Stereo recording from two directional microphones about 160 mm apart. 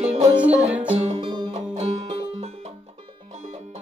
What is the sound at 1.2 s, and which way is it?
Music, 30° right (ahead or behind).